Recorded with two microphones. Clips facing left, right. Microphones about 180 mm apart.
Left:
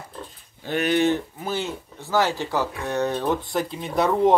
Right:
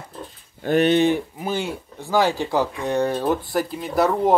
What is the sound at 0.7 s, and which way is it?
Speech, 25° right (ahead or behind).